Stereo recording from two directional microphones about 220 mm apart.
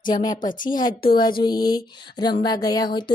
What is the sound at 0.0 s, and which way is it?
Speech, 20° left (ahead or behind).